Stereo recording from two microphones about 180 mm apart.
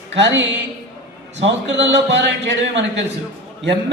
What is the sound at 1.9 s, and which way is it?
Speech, 75° right (ahead or behind).